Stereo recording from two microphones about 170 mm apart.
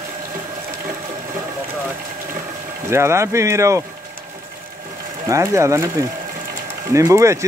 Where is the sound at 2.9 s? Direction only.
15° right (ahead or behind).